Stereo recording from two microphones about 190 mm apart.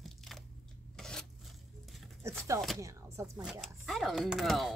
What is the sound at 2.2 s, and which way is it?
Speech, 15° right (ahead or behind).